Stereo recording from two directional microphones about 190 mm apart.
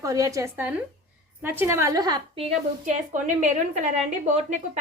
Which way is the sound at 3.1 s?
40° right (ahead or behind).